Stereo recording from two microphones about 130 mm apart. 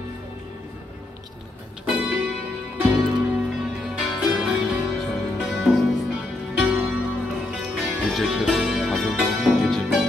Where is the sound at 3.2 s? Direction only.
10° right (ahead or behind).